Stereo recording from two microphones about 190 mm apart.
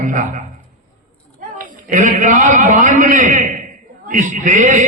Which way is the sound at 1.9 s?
45° right (ahead or behind).